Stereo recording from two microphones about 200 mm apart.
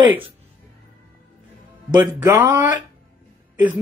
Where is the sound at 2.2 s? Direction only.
20° right (ahead or behind).